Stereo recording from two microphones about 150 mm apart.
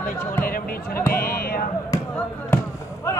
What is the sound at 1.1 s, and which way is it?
Music, 90° left.